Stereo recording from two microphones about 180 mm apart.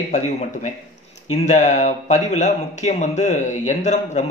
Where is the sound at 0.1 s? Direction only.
40° left (ahead or behind).